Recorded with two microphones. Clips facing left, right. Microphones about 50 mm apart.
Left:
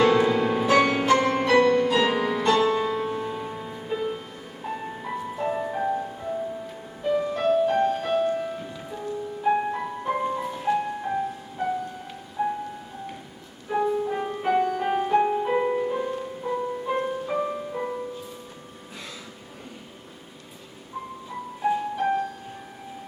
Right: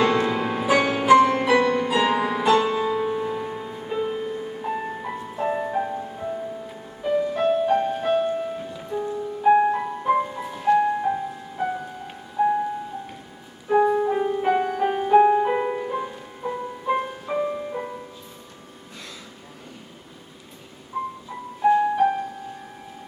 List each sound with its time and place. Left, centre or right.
0.0 s music: centre
13.7 s music: centre
20.9 s music: centre